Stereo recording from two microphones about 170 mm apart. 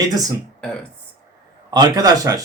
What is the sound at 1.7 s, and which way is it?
Mantra, 25° right (ahead or behind).